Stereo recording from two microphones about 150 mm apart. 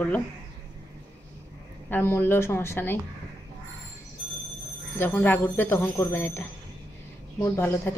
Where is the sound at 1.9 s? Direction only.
15° left (ahead or behind).